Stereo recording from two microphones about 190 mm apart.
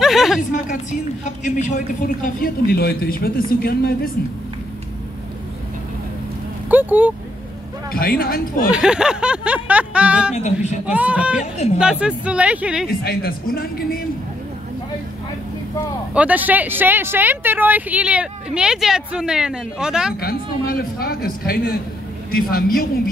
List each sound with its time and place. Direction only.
0.0 s a woman's voice: centre (ahead or behind)
1.2 s a woman's voice: 40° left (ahead or behind)
6.7 s speech: 10° right (ahead or behind)
7.9 s a woman's voice: 50° left (ahead or behind)
8.7 s speech: 5° right (ahead or behind)
10.3 s speech: 35° left (ahead or behind)
10.9 s speech: 5° right (ahead or behind)
11.5 s speech: 35° left (ahead or behind)
11.8 s speech: 5° right (ahead or behind)
12.8 s a woman's voice: 55° left (ahead or behind)
16.1 s speech: 5° right (ahead or behind)
20.2 s a woman's voice: 50° left (ahead or behind)